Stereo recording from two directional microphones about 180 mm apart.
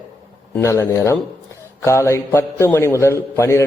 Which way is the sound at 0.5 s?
15° left (ahead or behind).